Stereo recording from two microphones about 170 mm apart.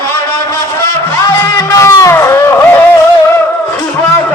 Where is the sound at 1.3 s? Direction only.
15° left (ahead or behind).